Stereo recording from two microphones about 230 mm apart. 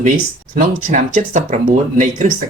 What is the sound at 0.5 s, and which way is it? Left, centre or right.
Speech, right.